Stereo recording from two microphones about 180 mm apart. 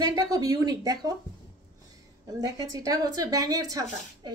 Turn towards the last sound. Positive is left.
turn(degrees=-20)  # may be behind; listen again after turning